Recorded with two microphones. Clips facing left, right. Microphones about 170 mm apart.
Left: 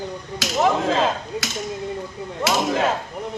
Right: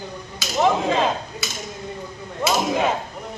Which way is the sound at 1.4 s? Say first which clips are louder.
Left 2 dB; 90° left.